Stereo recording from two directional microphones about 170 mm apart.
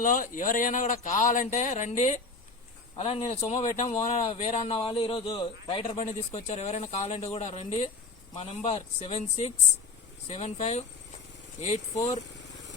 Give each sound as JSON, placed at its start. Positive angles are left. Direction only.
{"t": 0.0, "sound": "a man's voice", "side_deg": 50}